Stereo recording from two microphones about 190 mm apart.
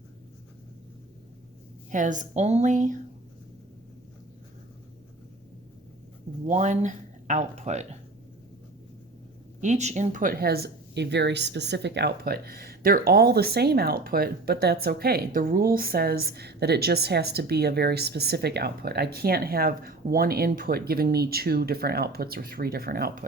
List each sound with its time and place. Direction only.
1.9 s speech: 40° right (ahead or behind)
6.5 s speech: 40° right (ahead or behind)
9.6 s speech: 40° right (ahead or behind)